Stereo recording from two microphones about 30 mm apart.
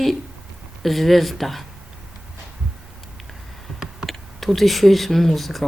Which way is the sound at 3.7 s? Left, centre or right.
Centre.